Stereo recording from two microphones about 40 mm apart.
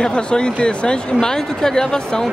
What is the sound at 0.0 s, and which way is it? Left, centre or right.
Speech, left.